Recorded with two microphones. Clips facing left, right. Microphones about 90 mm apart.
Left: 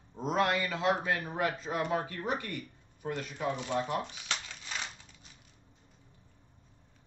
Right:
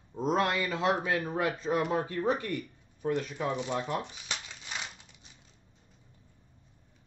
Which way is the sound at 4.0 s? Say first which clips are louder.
Left 1 dB; 15° right (ahead or behind).